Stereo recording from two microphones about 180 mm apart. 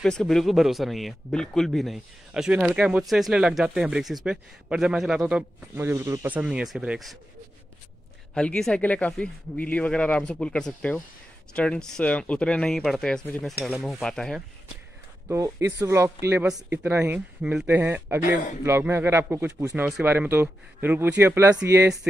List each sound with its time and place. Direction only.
0.0 s speech: 5° left (ahead or behind)
8.4 s speech: 5° left (ahead or behind)
15.2 s speech: 15° right (ahead or behind)